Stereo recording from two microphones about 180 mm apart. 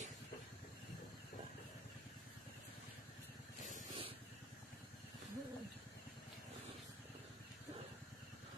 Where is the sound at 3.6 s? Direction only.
45° left (ahead or behind).